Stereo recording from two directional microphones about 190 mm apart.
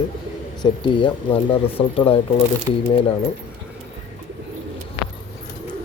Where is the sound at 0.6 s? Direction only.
25° left (ahead or behind).